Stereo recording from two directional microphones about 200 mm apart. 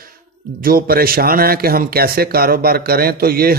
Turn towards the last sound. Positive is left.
turn(degrees=-50)  # may be behind; listen again after turning